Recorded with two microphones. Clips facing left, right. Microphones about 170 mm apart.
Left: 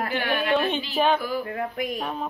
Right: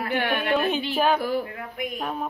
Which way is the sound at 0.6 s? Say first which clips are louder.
Even; 5° right (ahead or behind).